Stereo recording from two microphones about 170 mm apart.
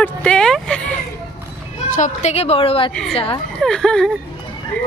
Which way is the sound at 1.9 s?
45° left (ahead or behind).